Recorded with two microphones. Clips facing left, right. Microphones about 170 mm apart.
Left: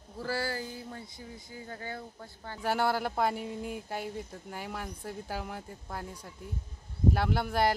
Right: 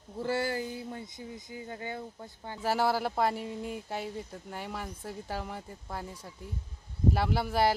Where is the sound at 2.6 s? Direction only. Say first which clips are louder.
Right 1 dB; centre (ahead or behind).